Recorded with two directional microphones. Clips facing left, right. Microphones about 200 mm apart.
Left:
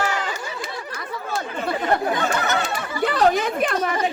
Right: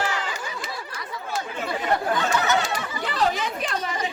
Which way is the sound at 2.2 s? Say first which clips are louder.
Even; 55° left (ahead or behind).